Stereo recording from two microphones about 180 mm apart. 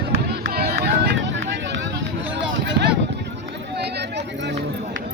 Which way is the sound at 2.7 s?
70° right (ahead or behind).